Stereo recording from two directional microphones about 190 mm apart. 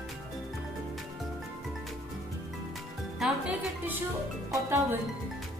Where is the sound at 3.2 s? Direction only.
5° right (ahead or behind).